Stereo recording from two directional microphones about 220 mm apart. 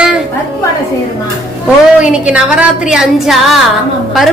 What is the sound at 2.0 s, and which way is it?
A woman's voice, 5° right (ahead or behind).